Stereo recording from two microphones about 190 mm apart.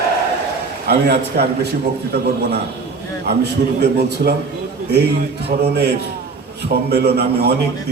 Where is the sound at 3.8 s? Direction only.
60° right (ahead or behind).